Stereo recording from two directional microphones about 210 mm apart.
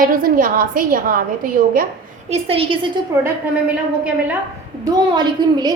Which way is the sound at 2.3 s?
30° right (ahead or behind).